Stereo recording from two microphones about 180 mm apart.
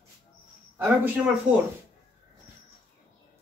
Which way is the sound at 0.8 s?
10° right (ahead or behind).